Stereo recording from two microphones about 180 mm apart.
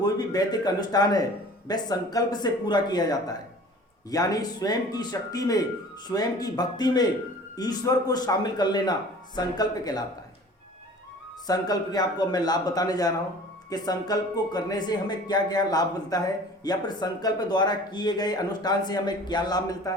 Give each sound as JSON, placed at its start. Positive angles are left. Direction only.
{"t": 0.0, "sound": "speech", "side_deg": 20}
{"t": 11.4, "sound": "speech", "side_deg": 20}